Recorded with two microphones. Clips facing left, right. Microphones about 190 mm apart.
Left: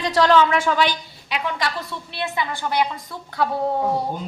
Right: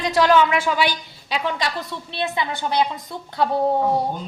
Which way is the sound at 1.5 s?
25° right (ahead or behind).